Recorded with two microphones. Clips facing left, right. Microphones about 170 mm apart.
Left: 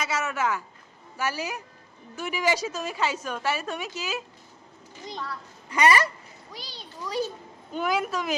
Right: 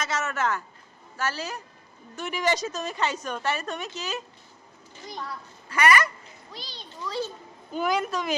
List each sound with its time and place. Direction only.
0.0 s a woman's voice: 10° left (ahead or behind)
5.6 s a sound: 15° left (ahead or behind)
6.5 s a woman's voice: 10° left (ahead or behind)
7.7 s a woman's voice: centre (ahead or behind)